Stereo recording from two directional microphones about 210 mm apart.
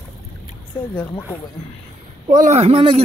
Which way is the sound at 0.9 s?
10° left (ahead or behind).